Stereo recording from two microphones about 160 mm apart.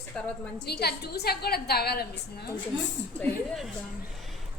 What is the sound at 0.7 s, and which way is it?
A woman's voice, 85° left.